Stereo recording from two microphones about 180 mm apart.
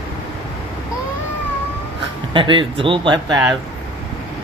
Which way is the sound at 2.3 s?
30° right (ahead or behind).